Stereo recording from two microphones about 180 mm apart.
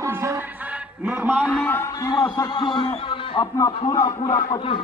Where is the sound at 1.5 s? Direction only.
10° left (ahead or behind).